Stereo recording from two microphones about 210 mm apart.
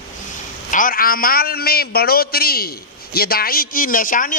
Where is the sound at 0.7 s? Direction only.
40° left (ahead or behind).